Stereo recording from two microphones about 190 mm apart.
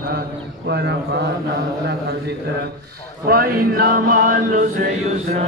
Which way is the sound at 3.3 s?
50° right (ahead or behind).